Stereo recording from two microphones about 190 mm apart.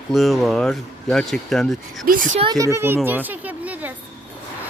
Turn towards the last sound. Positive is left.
turn(degrees=-10)  # may be behind; listen again after turning